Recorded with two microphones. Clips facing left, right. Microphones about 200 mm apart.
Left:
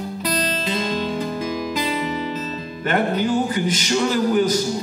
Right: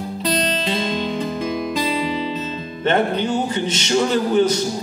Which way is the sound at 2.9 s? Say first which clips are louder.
Right 1 dB; 25° right (ahead or behind).